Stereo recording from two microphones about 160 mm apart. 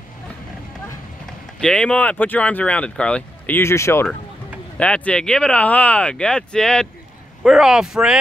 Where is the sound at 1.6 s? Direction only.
5° left (ahead or behind).